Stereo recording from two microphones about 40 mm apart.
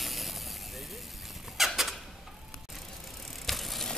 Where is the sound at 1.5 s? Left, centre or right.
Centre.